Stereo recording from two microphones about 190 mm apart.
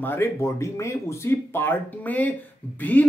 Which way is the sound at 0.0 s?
10° left (ahead or behind).